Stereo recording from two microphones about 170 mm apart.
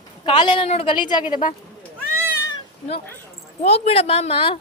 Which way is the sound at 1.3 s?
50° left (ahead or behind).